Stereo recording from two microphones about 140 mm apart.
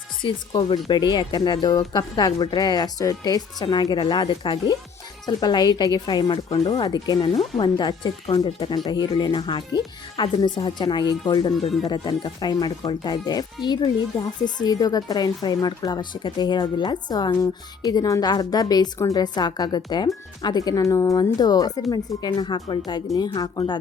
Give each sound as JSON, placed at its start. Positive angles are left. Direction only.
{"t": 0.2, "sound": "speech", "side_deg": 35}